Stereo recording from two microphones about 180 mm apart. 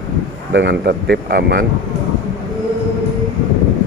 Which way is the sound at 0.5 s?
70° right (ahead or behind).